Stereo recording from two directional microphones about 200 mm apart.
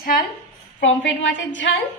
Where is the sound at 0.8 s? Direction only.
65° left (ahead or behind).